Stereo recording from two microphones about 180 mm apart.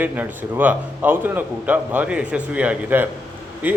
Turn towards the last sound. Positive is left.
turn(degrees=-10)  # may be behind; listen again after turning